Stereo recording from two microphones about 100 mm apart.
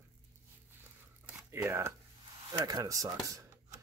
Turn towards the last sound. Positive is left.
turn(degrees=-35)  # may be behind; listen again after turning